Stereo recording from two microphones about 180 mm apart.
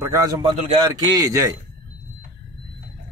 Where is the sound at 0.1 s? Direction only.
20° right (ahead or behind).